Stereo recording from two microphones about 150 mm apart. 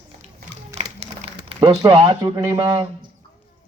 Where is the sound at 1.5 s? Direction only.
40° right (ahead or behind).